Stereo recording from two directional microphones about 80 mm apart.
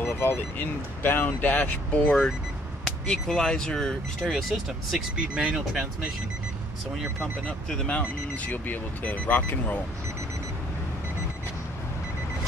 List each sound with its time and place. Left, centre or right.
0.0 s speech: left
2.8 s speech: centre
5.3 s speech: centre
7.7 s speech: centre